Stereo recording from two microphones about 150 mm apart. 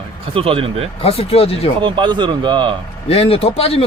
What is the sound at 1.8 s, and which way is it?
Speech, 30° right (ahead or behind).